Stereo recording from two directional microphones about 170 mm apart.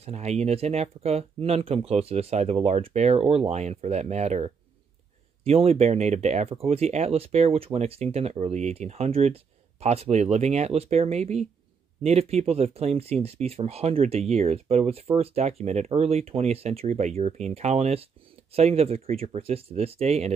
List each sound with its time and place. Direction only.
0.0 s speech: 40° right (ahead or behind)